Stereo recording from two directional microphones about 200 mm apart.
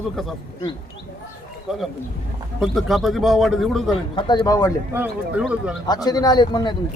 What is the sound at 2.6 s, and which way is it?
A man's voice, centre (ahead or behind).